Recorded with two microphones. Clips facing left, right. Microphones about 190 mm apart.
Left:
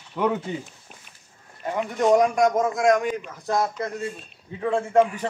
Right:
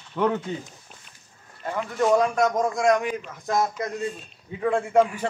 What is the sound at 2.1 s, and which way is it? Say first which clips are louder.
Speech: left 3 dB; 15° left (ahead or behind).